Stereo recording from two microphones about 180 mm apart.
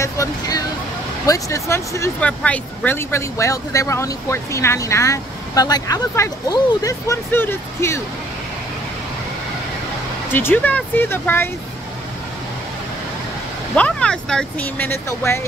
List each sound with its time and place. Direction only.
0.0 s vehicle: 20° left (ahead or behind)
1.2 s speech: 15° left (ahead or behind)
10.3 s speech: 10° left (ahead or behind)
13.7 s speech: 5° left (ahead or behind)